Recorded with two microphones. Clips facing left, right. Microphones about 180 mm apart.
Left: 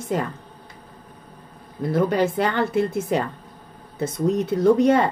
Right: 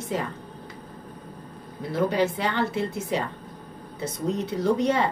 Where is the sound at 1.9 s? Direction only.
50° left (ahead or behind).